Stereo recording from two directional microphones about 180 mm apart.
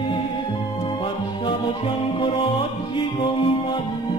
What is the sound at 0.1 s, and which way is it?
Music, 25° left (ahead or behind).